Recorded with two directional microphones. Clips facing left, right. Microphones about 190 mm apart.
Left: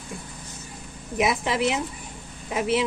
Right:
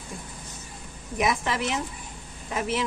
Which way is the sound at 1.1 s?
10° left (ahead or behind).